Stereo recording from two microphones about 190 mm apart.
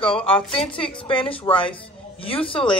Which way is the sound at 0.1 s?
30° left (ahead or behind).